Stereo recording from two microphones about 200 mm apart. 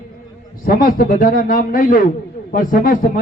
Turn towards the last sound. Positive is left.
turn(degrees=45)  # may be behind; listen again after turning